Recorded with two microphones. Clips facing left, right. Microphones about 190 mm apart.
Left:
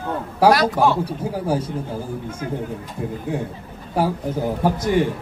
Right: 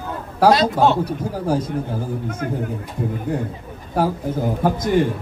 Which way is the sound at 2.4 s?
55° right (ahead or behind).